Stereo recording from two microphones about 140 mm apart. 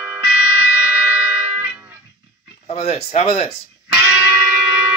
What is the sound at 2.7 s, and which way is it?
Speech, 45° left (ahead or behind).